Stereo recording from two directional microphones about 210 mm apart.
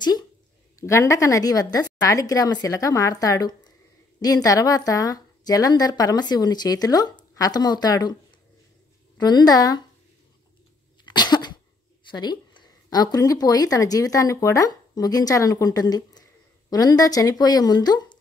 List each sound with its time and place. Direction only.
0.7 s a woman's voice: 15° left (ahead or behind)
9.2 s a woman's voice: 20° left (ahead or behind)
11.1 s cough: 20° left (ahead or behind)
12.1 s a woman's voice: 20° left (ahead or behind)